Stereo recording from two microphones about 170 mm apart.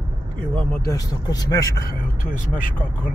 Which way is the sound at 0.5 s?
10° left (ahead or behind).